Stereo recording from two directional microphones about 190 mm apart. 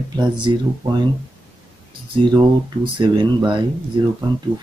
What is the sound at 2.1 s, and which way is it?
Speech, 25° right (ahead or behind).